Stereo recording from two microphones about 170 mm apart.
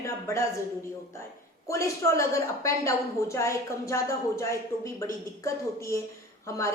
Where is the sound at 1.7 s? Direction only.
15° left (ahead or behind).